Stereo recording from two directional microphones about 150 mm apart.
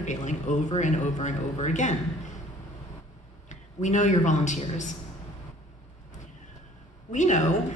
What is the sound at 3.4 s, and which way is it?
A man's voice, 50° left (ahead or behind).